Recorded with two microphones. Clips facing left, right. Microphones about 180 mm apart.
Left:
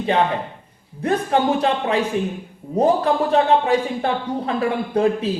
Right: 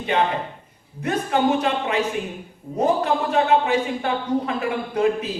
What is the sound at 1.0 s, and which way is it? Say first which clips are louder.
A man's voice: left 2 dB; 35° left (ahead or behind).